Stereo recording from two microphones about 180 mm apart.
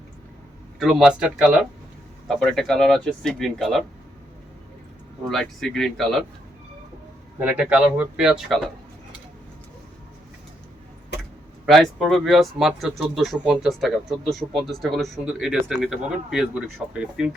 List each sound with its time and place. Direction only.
0.8 s speech: centre (ahead or behind)
5.3 s speech: centre (ahead or behind)
7.3 s speech: 5° right (ahead or behind)
11.6 s speech: centre (ahead or behind)